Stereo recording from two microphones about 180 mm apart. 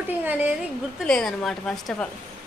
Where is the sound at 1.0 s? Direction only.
5° left (ahead or behind).